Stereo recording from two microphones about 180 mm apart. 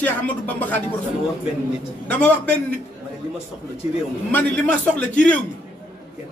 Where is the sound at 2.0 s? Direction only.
5° left (ahead or behind).